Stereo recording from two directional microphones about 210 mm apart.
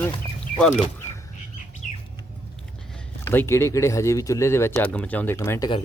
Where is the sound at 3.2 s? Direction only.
10° left (ahead or behind).